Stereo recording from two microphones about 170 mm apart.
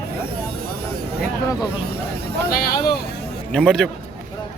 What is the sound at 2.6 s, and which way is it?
Speech, 65° left (ahead or behind).